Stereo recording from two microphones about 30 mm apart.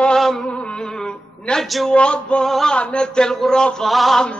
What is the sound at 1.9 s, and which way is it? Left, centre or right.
Male singing, left.